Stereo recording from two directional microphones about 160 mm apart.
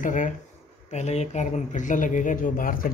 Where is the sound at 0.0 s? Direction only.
50° left (ahead or behind).